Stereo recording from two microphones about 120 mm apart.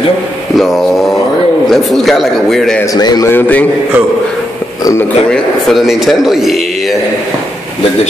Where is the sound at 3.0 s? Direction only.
35° left (ahead or behind).